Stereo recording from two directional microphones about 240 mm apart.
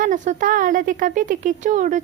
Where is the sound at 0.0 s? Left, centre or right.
Right.